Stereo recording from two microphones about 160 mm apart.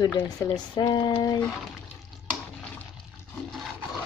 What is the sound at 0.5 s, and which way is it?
Speech, 25° left (ahead or behind).